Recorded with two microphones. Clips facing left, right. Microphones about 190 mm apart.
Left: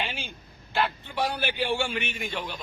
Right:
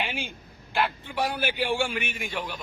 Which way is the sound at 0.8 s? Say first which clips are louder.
Even; 10° right (ahead or behind).